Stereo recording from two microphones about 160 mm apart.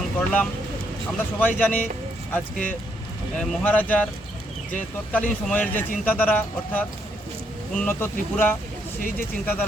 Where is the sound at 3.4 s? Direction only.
5° left (ahead or behind).